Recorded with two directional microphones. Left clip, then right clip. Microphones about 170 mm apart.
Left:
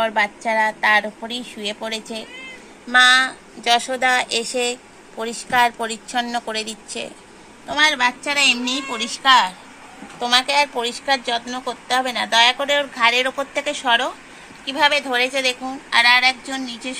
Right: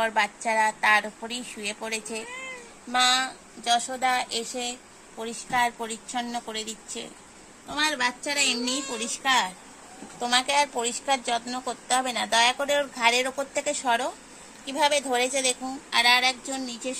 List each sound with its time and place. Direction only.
0.0 s a woman's voice: 5° left (ahead or behind)
3.6 s a woman's voice: 20° left (ahead or behind)
7.6 s a woman's voice: 15° left (ahead or behind)
8.2 s a woman's voice: centre (ahead or behind)
8.9 s a woman's voice: 20° right (ahead or behind)
15.9 s speech: 10° right (ahead or behind)